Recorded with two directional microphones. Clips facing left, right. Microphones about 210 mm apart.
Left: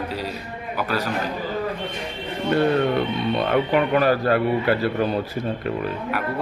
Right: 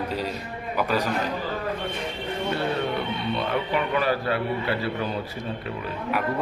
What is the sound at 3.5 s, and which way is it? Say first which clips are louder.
A man's voice: left 7 dB; 50° left (ahead or behind).